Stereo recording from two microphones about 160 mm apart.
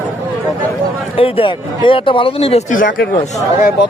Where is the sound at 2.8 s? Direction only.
65° left (ahead or behind).